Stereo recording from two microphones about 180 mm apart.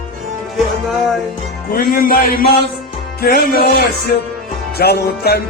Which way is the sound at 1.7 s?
55° left (ahead or behind).